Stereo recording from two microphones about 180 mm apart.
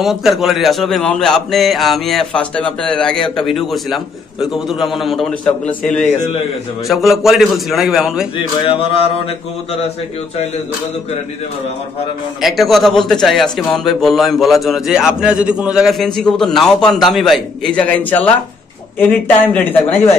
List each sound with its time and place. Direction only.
0.0 s a man's voice: centre (ahead or behind)
8.4 s mantra: 30° left (ahead or behind)
12.4 s a man's voice: centre (ahead or behind)